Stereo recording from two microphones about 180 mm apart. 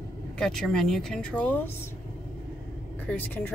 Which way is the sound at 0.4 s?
Centre (ahead or behind).